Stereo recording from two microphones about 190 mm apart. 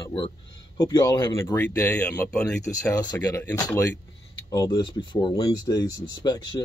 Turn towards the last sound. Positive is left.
turn(degrees=20)  # may be behind; listen again after turning